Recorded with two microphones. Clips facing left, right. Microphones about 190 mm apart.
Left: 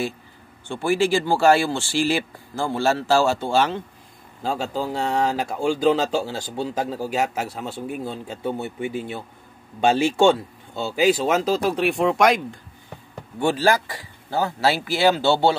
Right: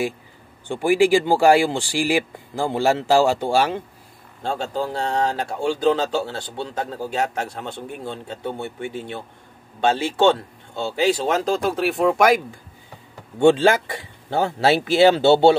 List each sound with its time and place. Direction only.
0.7 s speech: 15° right (ahead or behind)
4.4 s speech: 5° left (ahead or behind)
13.4 s speech: 25° right (ahead or behind)